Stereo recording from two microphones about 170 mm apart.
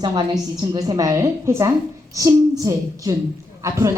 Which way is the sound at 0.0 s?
25° right (ahead or behind).